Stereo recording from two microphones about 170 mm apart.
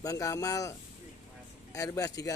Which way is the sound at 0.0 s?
20° left (ahead or behind).